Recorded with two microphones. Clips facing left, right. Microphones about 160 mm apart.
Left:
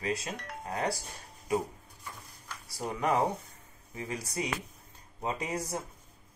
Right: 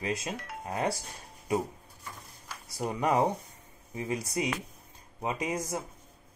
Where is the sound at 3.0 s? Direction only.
30° right (ahead or behind).